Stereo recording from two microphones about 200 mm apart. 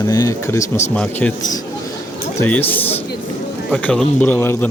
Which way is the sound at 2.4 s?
10° left (ahead or behind).